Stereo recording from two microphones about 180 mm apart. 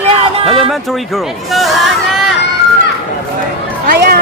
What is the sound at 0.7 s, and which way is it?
Speech, centre (ahead or behind).